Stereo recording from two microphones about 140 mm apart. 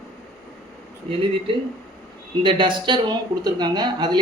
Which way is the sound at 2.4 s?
35° right (ahead or behind).